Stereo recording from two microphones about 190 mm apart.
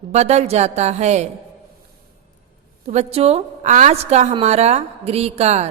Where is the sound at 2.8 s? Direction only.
35° right (ahead or behind).